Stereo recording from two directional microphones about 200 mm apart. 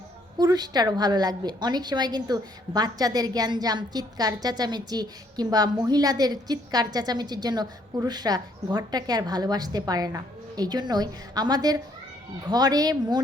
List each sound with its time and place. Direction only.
0.3 s a woman's voice: 20° right (ahead or behind)